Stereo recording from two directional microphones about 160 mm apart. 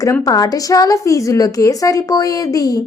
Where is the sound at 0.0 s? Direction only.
20° left (ahead or behind).